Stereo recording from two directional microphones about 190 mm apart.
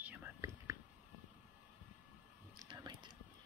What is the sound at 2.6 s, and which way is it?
Whispering, 20° right (ahead or behind).